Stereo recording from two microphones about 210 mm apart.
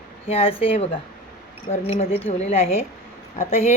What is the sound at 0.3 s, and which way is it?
A woman's voice, 25° left (ahead or behind).